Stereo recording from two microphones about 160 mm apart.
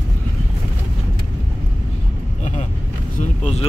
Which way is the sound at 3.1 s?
45° left (ahead or behind).